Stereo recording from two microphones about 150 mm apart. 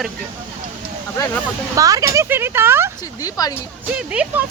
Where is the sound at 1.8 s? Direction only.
25° right (ahead or behind).